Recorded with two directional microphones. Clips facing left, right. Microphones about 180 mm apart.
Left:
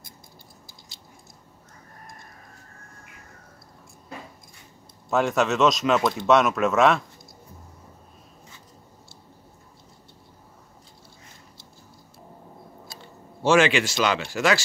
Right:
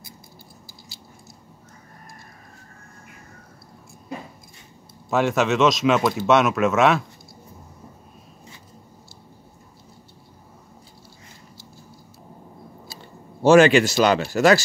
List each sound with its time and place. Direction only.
5.1 s speech: centre (ahead or behind)
13.4 s speech: 40° right (ahead or behind)